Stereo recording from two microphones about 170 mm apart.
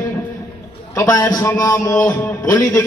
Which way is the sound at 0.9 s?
20° left (ahead or behind).